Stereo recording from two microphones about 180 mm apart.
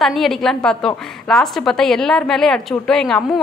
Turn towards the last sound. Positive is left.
turn(degrees=5)  # may be behind; listen again after turning